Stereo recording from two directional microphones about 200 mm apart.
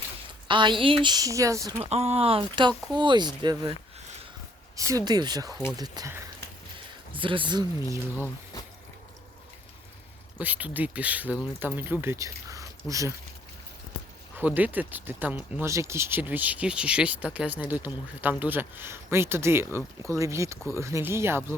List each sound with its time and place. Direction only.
0.4 s speech: 25° right (ahead or behind)
1.8 s speech: 30° right (ahead or behind)
4.8 s speech: 15° right (ahead or behind)
8.1 s speech: 10° left (ahead or behind)
10.3 s speech: 5° right (ahead or behind)
14.3 s speech: 10° right (ahead or behind)